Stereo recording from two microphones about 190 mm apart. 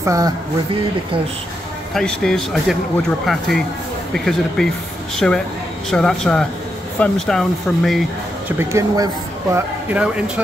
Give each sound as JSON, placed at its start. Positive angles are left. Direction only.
{"t": 0.0, "sound": "speech", "side_deg": -15}
{"t": 2.0, "sound": "speech", "side_deg": 5}
{"t": 8.5, "sound": "speech", "side_deg": -15}